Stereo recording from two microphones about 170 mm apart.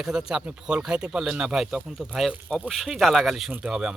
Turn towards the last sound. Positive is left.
turn(degrees=-5)  # may be behind; listen again after turning